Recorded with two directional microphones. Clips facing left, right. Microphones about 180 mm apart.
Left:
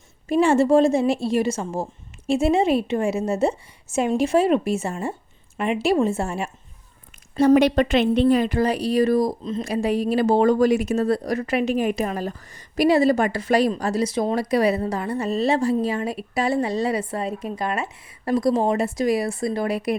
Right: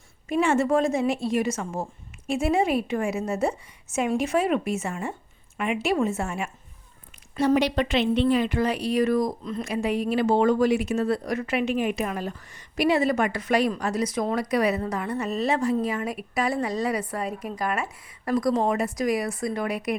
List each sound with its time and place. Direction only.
0.3 s a woman's voice: 30° left (ahead or behind)
7.3 s speech: 50° left (ahead or behind); by 20.0 s 30° left (ahead or behind)